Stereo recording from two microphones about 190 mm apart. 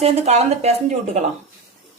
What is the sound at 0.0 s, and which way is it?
Speech, 35° right (ahead or behind).